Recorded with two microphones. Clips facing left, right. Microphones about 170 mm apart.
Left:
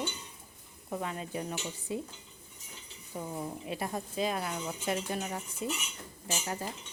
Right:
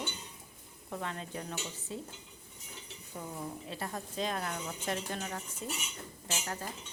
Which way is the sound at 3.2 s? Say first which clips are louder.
Left 3 dB; 15° left (ahead or behind).